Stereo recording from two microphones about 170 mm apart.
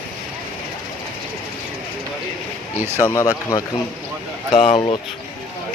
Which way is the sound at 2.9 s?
15° left (ahead or behind).